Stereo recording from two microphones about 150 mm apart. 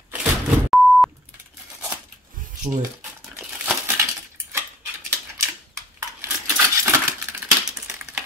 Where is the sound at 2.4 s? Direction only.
65° right (ahead or behind).